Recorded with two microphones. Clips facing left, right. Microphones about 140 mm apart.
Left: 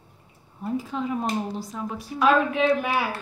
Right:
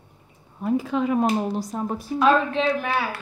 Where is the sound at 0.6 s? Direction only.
70° right (ahead or behind).